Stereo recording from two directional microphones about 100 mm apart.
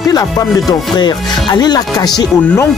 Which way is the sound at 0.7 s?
45° left (ahead or behind).